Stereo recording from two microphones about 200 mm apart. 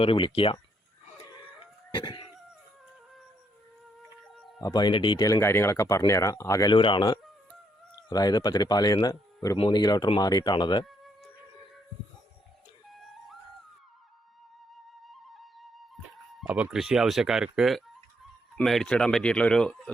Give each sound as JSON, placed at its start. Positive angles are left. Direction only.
{"t": 0.0, "sound": "speech", "side_deg": 25}
{"t": 2.0, "sound": "a sound", "side_deg": 25}
{"t": 4.4, "sound": "a sound", "side_deg": 0}
{"t": 4.6, "sound": "speech", "side_deg": 20}
{"t": 12.9, "sound": "music", "side_deg": 0}
{"t": 16.4, "sound": "speech", "side_deg": -5}